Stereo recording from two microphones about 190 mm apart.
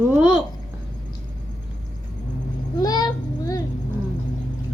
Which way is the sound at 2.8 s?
20° left (ahead or behind).